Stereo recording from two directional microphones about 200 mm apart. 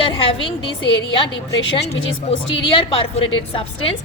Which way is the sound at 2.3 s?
30° left (ahead or behind).